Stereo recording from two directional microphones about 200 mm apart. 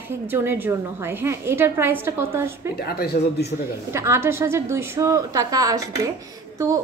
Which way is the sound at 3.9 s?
15° right (ahead or behind).